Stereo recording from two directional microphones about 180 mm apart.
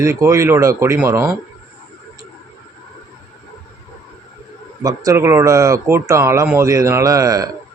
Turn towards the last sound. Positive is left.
turn(degrees=-20)  # may be behind; listen again after turning